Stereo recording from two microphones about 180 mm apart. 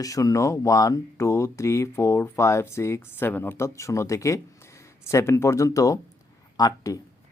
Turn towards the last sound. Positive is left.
turn(degrees=20)  # may be behind; listen again after turning